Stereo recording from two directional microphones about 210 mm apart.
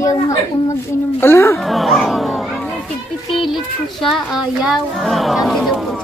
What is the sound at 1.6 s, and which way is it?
Speech, centre (ahead or behind).